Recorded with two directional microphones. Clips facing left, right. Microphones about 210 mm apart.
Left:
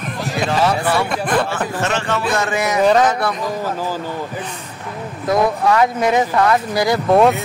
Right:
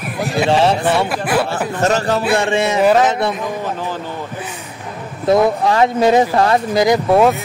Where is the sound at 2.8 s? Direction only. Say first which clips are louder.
Even; 5° right (ahead or behind).